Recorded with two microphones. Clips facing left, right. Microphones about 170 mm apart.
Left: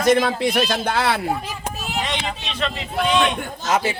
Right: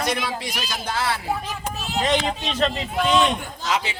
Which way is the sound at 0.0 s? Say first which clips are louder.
Left 9 dB; 50° left (ahead or behind).